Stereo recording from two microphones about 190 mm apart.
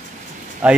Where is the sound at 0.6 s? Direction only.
5° right (ahead or behind).